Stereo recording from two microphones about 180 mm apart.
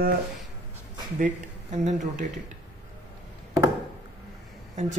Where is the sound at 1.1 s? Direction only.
40° right (ahead or behind).